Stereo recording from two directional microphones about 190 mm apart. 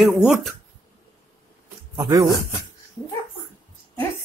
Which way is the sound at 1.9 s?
20° right (ahead or behind).